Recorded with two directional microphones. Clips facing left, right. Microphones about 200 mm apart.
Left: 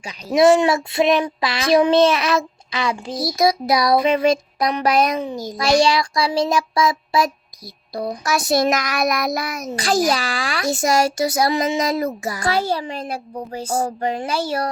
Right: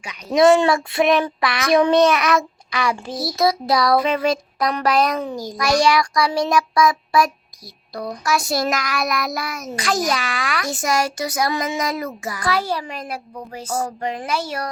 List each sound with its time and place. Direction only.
0.3 s a child's voice: 20° left (ahead or behind)
9.7 s a child's voice: 30° left (ahead or behind)